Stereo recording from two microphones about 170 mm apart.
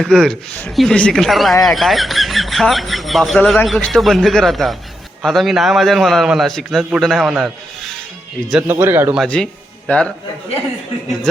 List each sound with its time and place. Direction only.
0.0 s speech: centre (ahead or behind)
8.6 s speech: 15° right (ahead or behind)
9.1 s speech: 5° left (ahead or behind)